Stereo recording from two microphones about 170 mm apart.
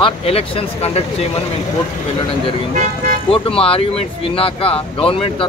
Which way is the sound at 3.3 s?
35° left (ahead or behind).